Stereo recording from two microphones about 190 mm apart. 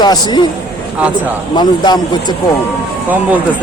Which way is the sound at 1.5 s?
25° left (ahead or behind).